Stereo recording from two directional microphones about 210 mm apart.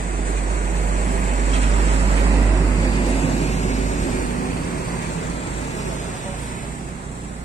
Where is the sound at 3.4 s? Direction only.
35° left (ahead or behind).